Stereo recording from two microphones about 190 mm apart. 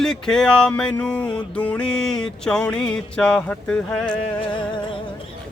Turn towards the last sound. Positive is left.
turn(degrees=25)  # may be behind; listen again after turning